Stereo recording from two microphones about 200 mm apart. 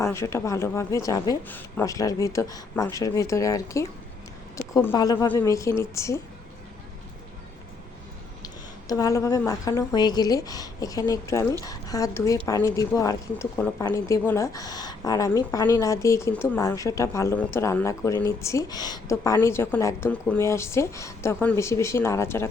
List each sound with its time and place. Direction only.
0.0 s a woman's voice: 15° left (ahead or behind)
8.9 s a woman's voice: 15° left (ahead or behind)